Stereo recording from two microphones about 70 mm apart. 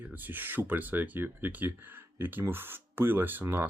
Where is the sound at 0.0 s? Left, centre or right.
Right.